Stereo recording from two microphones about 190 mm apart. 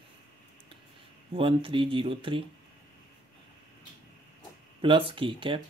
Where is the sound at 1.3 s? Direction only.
30° right (ahead or behind).